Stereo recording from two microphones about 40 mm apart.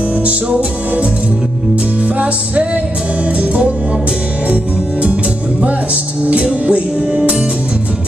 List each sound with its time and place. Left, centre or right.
6.2 s music: right